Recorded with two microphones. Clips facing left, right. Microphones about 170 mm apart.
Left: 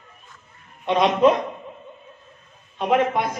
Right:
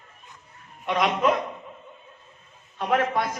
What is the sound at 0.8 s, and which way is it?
Speech, 25° left (ahead or behind).